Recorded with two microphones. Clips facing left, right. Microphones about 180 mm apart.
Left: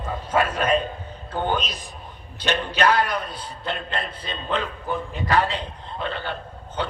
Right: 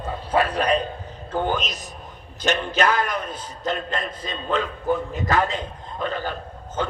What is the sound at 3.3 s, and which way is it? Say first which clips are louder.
A man's voice: right 3 dB; 45° right (ahead or behind).